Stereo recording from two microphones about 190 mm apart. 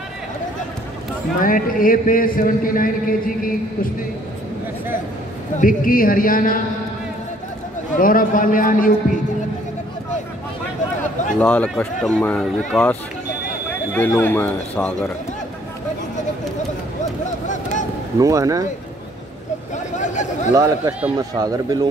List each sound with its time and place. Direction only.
1.4 s a man's voice: 45° left (ahead or behind)
5.6 s a man's voice: 45° left (ahead or behind)
7.9 s a man's voice: 45° left (ahead or behind)
11.3 s speech: 5° left (ahead or behind)
13.9 s speech: 10° left (ahead or behind)
18.2 s speech: 15° right (ahead or behind)
19.7 s speech: 40° left (ahead or behind)
20.5 s speech: 20° right (ahead or behind)